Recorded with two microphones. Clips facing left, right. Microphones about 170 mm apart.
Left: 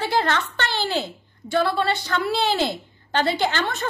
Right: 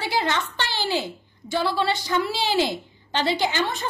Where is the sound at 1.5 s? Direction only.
55° left (ahead or behind).